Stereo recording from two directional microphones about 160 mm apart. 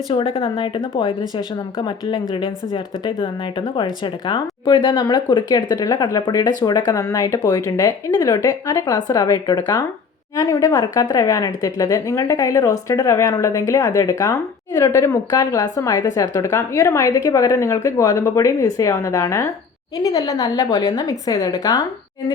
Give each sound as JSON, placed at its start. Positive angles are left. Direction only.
{"t": 0.1, "sound": "speech", "side_deg": 35}